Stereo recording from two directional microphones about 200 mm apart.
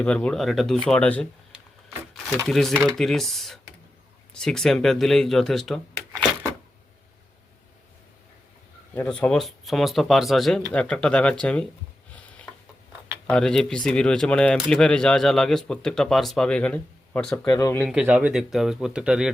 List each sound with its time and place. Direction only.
0.0 s speech: 5° left (ahead or behind)
2.5 s speech: centre (ahead or behind)
9.0 s speech: 5° left (ahead or behind)
13.3 s speech: 5° left (ahead or behind)
17.5 s speech: 15° left (ahead or behind)
17.8 s speech: 5° right (ahead or behind)